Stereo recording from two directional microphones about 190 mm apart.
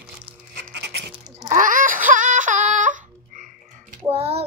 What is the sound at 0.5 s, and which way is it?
Music, 65° right (ahead or behind).